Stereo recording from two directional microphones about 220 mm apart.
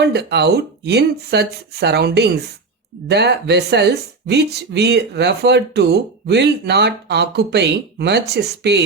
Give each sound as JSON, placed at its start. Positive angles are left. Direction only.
{"t": 0.0, "sound": "speech", "side_deg": -50}